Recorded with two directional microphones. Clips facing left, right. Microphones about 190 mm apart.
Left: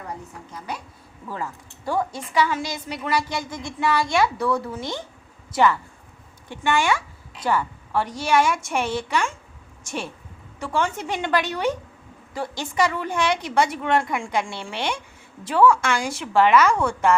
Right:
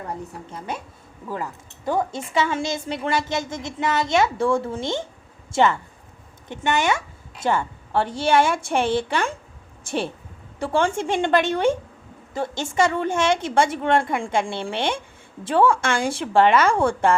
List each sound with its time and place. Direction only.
0.7 s a woman's voice: 25° right (ahead or behind)